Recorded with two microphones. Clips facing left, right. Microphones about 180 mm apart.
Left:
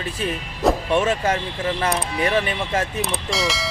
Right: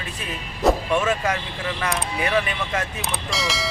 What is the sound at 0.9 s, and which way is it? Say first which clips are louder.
Speech: left 2 dB; 30° left (ahead or behind).